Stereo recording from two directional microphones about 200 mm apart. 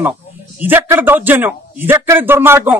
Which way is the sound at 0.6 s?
10° right (ahead or behind).